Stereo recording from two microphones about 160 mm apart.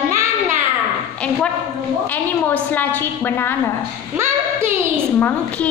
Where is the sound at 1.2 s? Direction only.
5° left (ahead or behind).